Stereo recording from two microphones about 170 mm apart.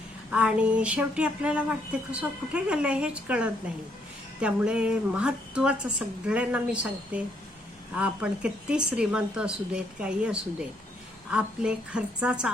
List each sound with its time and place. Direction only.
0.3 s a woman's voice: 5° right (ahead or behind)